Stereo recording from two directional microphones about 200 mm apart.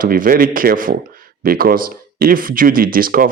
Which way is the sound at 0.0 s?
45° right (ahead or behind).